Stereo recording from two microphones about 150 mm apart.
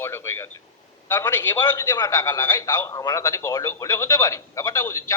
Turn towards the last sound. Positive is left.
turn(degrees=20)  # may be behind; listen again after turning